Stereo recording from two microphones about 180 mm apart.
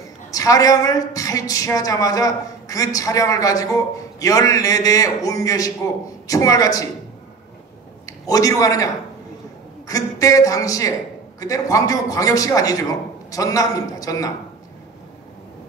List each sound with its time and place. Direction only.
0.3 s a woman's voice: 20° left (ahead or behind)
8.3 s a woman's voice: 20° left (ahead or behind)